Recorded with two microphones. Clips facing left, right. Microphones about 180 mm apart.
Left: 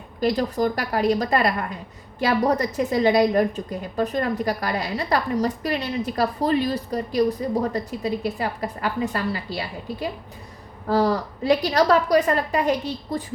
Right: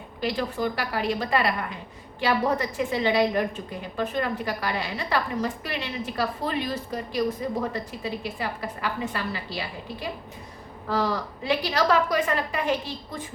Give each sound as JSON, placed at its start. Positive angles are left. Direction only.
{"t": 0.2, "sound": "a woman's voice", "side_deg": 40}